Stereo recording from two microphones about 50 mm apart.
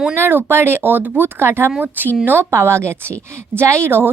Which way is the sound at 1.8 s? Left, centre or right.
Right.